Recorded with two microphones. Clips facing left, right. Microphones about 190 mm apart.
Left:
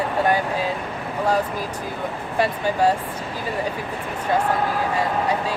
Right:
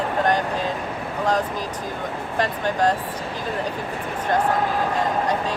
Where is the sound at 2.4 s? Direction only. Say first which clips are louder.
Left 2 dB; 10° left (ahead or behind).